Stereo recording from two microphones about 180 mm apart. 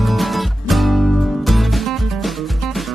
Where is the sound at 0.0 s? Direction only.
Centre (ahead or behind).